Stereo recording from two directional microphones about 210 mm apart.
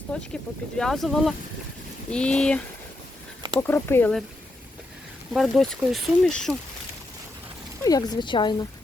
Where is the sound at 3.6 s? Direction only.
10° left (ahead or behind).